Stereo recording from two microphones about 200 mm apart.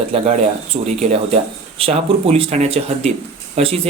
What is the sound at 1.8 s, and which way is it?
Speech, 30° right (ahead or behind).